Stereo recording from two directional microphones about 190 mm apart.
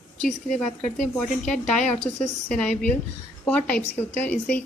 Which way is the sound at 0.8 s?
45° left (ahead or behind).